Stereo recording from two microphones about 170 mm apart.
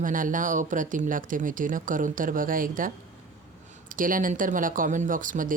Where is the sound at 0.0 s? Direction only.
50° right (ahead or behind).